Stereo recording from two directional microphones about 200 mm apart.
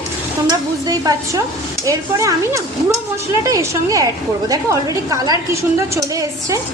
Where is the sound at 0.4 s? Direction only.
20° right (ahead or behind).